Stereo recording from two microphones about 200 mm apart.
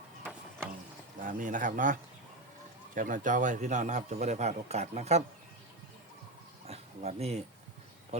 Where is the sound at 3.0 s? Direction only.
40° right (ahead or behind).